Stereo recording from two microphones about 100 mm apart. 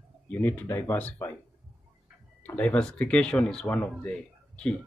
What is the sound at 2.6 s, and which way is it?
Speech, 10° left (ahead or behind).